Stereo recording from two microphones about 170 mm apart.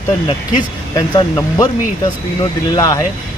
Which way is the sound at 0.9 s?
20° left (ahead or behind).